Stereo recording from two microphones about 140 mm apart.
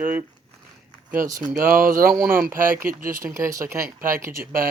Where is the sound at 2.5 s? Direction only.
75° right (ahead or behind).